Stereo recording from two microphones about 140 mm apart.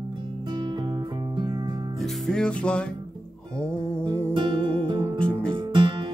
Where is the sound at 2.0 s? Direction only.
5° left (ahead or behind).